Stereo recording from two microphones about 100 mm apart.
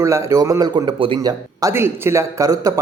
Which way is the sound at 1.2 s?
35° right (ahead or behind).